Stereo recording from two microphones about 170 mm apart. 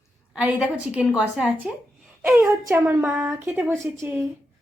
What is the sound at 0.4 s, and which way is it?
A woman's voice, 5° right (ahead or behind).